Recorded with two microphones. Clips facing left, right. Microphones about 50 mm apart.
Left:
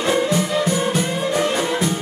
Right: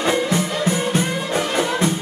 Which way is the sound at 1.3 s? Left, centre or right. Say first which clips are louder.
Right 1 dB; right.